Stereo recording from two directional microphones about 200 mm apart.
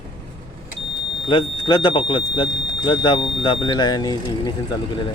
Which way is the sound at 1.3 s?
25° left (ahead or behind).